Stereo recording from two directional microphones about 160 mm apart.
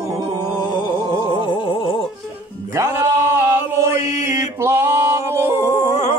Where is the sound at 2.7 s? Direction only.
15° right (ahead or behind).